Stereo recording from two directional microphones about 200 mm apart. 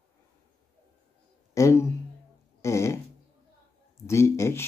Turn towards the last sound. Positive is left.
turn(degrees=15)  # may be behind; listen again after turning